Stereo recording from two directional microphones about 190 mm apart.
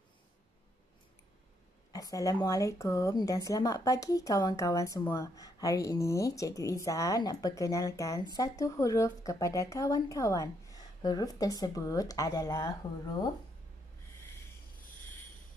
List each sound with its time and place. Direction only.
1.9 s a woman's voice: 20° left (ahead or behind)